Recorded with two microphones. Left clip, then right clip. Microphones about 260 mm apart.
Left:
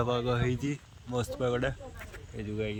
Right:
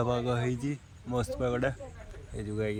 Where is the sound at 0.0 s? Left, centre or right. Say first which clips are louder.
Even; centre.